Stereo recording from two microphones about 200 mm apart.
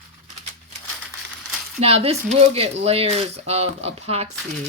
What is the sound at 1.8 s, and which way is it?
Speech, 30° right (ahead or behind).